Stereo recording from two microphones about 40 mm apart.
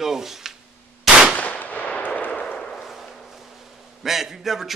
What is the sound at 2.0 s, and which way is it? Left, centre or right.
Artillery fire, left.